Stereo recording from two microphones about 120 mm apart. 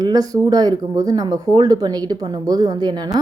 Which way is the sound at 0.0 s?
30° right (ahead or behind).